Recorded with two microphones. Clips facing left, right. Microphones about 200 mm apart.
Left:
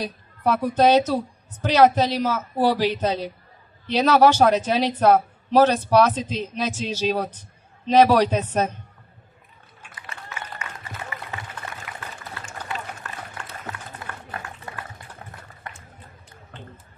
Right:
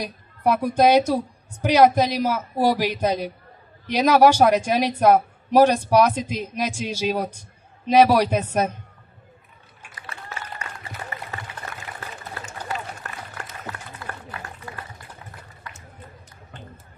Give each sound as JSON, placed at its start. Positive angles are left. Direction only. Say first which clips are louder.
{"t": 0.0, "sound": "speech", "louder": "right 1 dB", "side_deg": -10}
{"t": 11.9, "sound": "a sound", "louder": "right 1 dB", "side_deg": -35}
{"t": 12.4, "sound": "run", "louder": "right 1 dB", "side_deg": -40}